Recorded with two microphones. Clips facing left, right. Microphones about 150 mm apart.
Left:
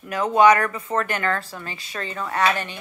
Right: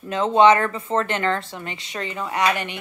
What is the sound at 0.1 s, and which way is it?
Speech, 25° right (ahead or behind).